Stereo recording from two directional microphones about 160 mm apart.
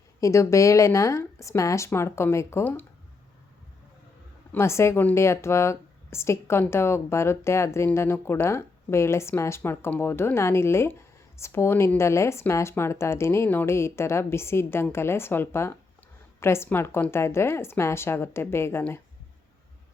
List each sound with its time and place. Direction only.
0.2 s speech: 20° left (ahead or behind)
4.5 s speech: 15° left (ahead or behind)